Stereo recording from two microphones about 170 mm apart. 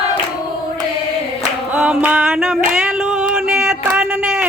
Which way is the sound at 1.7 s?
10° right (ahead or behind).